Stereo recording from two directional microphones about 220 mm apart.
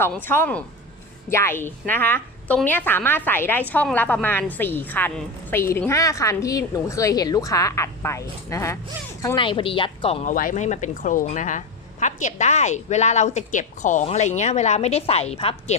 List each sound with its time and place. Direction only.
0.0 s a woman's voice: 10° left (ahead or behind); by 10.3 s 25° left (ahead or behind)
10.3 s a woman's voice: 35° left (ahead or behind)